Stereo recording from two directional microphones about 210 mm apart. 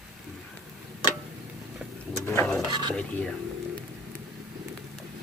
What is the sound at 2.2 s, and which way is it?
Speech, 10° left (ahead or behind).